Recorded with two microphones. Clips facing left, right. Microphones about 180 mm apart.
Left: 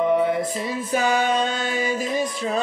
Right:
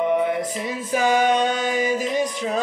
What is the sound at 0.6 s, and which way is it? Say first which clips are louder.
Music: even; 15° right (ahead or behind).